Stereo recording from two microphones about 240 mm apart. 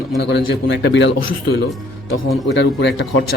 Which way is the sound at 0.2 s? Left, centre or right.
Left.